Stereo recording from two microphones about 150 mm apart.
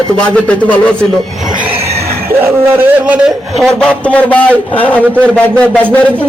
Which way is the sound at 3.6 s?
5° left (ahead or behind).